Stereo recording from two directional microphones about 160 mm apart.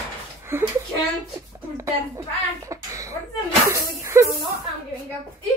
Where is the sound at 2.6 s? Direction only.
20° right (ahead or behind).